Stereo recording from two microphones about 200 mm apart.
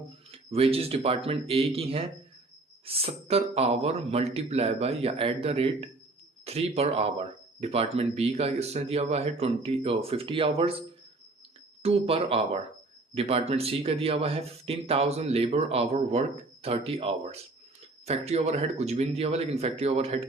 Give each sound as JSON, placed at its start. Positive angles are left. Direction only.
{"t": 0.3, "sound": "speech", "side_deg": -30}